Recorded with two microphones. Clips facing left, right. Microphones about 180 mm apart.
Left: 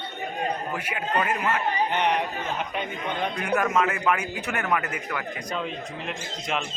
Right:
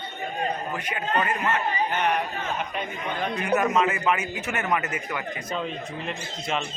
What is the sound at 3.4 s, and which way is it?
A man's voice, centre (ahead or behind).